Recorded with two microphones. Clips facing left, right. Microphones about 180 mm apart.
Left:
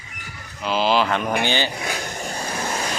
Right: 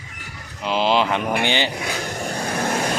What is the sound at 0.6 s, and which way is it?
Speech, 20° right (ahead or behind).